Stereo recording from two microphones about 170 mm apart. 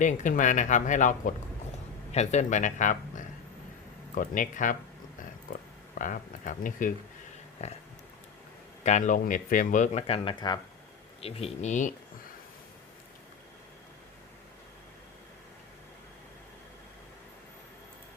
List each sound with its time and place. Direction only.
0.0 s speech: 45° left (ahead or behind)
8.8 s speech: 45° left (ahead or behind)